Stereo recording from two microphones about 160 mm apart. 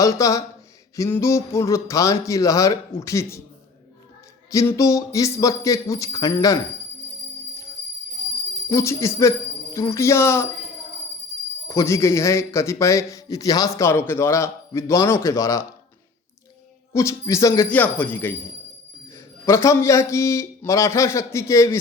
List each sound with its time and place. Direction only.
0.0 s a man's voice: 20° left (ahead or behind)
4.5 s a man's voice: 20° left (ahead or behind)
8.7 s a man's voice: 20° left (ahead or behind)
11.7 s a man's voice: 20° left (ahead or behind)
16.9 s a man's voice: 20° left (ahead or behind)